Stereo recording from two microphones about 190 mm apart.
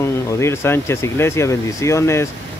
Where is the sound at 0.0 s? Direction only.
15° left (ahead or behind).